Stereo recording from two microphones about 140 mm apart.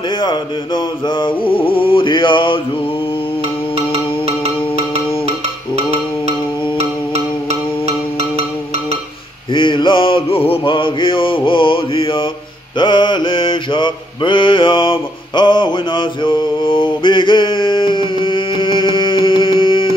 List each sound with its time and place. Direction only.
0.2 s music: 30° left (ahead or behind)
9.5 s mantra: 35° left (ahead or behind)